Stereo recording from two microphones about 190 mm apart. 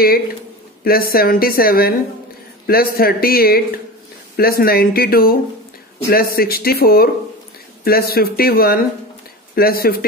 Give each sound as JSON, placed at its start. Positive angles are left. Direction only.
{"t": 0.8, "sound": "a man's voice", "side_deg": 50}